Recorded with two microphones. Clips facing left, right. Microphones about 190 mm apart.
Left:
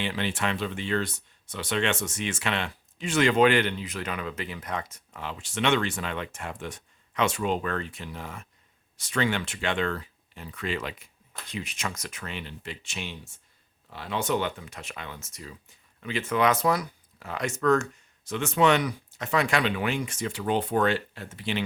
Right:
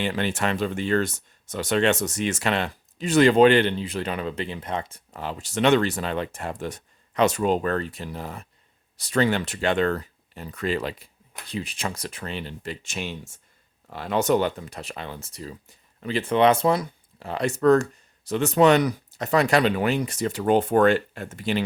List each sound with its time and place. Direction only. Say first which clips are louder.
0.0 s speech: right 4 dB; 45° right (ahead or behind)